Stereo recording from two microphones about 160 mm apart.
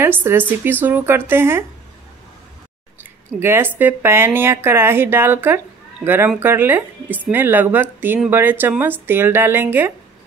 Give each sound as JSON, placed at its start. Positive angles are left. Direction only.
{"t": 0.0, "sound": "a woman's voice", "side_deg": -15}
{"t": 3.0, "sound": "a sound", "side_deg": -15}
{"t": 3.7, "sound": "a woman's voice", "side_deg": -15}